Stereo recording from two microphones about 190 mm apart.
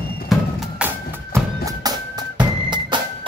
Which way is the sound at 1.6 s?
20° right (ahead or behind).